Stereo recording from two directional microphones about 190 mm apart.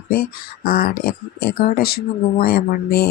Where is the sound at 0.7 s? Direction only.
50° left (ahead or behind).